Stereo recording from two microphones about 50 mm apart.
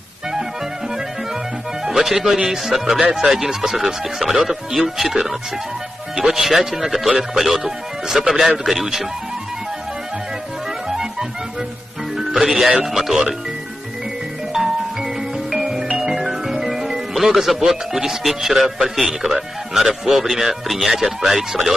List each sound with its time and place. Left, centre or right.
1.9 s speech: centre
6.3 s speech: centre
10.9 s music: centre
12.8 s speech: centre
15.5 s music: centre
15.9 s speech: centre